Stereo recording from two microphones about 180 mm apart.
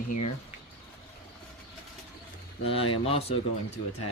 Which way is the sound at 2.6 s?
30° left (ahead or behind).